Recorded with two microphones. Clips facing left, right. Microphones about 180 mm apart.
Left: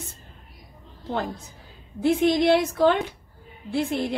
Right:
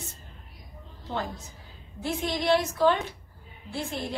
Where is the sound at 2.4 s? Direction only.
60° left (ahead or behind).